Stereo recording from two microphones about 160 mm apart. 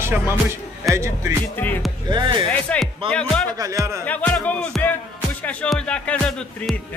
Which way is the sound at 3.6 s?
20° right (ahead or behind).